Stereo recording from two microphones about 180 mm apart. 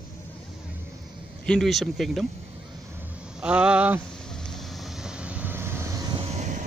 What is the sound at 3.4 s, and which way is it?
Speech, 5° right (ahead or behind).